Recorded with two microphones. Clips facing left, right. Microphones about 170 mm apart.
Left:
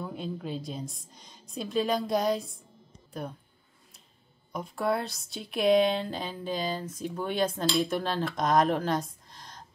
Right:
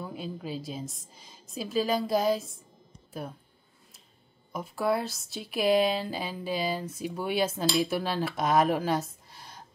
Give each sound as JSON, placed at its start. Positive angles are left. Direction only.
{"t": 0.0, "sound": "a woman's voice", "side_deg": -5}
{"t": 4.5, "sound": "speech", "side_deg": 0}